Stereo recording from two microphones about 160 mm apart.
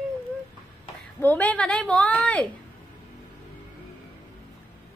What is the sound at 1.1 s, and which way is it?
A woman's voice, 10° left (ahead or behind).